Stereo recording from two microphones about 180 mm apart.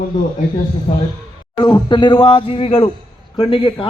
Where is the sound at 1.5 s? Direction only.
25° left (ahead or behind).